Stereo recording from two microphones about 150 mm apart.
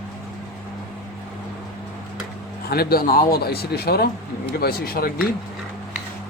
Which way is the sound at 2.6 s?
85° left.